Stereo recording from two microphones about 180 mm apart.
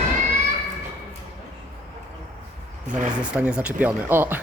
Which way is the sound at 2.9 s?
5° right (ahead or behind).